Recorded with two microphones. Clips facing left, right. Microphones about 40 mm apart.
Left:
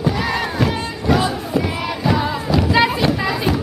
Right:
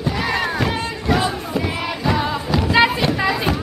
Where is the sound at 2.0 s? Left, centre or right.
Centre.